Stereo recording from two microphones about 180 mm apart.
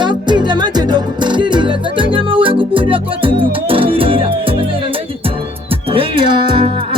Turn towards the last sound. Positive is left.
turn(degrees=-25)  # may be behind; listen again after turning